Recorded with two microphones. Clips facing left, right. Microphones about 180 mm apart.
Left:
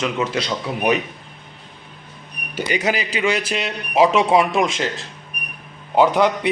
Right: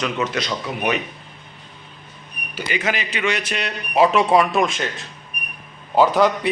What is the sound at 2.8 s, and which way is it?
A man's voice, 35° left (ahead or behind).